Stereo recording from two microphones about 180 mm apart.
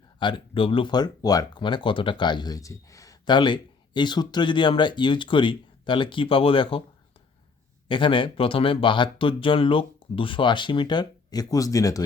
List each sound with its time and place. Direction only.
0.2 s speech: 25° left (ahead or behind)
7.9 s speech: 30° left (ahead or behind)